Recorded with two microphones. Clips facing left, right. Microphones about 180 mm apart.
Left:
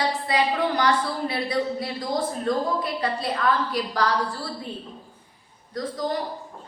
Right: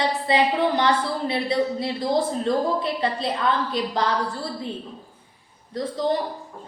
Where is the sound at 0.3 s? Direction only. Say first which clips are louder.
Right 4 dB; 25° right (ahead or behind).